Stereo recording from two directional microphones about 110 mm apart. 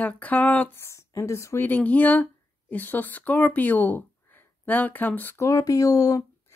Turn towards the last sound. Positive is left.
turn(degrees=30)  # may be behind; listen again after turning